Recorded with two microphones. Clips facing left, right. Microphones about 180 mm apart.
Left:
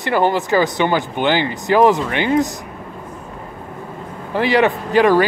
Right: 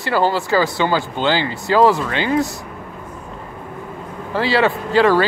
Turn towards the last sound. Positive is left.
turn(degrees=15)  # may be behind; listen again after turning